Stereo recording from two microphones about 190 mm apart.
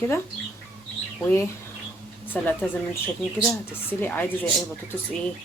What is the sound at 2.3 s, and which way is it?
Speech, 10° left (ahead or behind).